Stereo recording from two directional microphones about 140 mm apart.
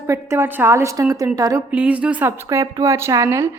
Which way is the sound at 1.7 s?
10° right (ahead or behind).